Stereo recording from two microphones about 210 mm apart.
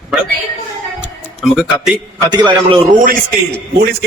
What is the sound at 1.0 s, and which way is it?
Music, 5° right (ahead or behind).